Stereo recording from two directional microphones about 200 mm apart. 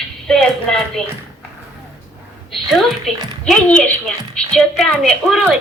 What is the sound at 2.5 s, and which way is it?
A woman's voice, centre (ahead or behind).